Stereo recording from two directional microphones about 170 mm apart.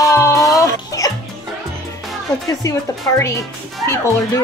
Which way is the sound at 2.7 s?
15° left (ahead or behind).